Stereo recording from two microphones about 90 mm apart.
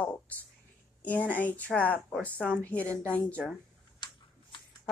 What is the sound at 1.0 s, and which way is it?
Speech, 20° left (ahead or behind).